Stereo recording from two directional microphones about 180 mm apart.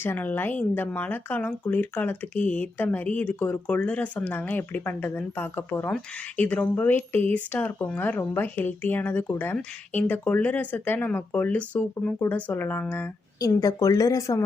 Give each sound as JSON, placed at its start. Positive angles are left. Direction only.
{"t": 0.0, "sound": "a woman's voice", "side_deg": 10}